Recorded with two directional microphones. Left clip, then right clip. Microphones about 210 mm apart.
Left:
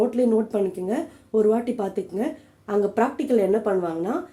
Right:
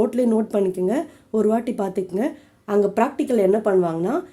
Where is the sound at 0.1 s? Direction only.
50° right (ahead or behind).